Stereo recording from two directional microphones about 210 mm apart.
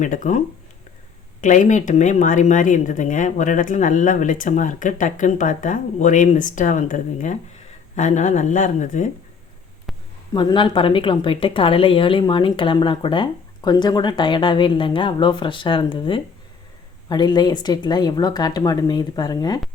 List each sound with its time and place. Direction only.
0.0 s a woman's voice: 35° left (ahead or behind)
9.9 s a sound: centre (ahead or behind)
10.3 s a woman's voice: 20° left (ahead or behind)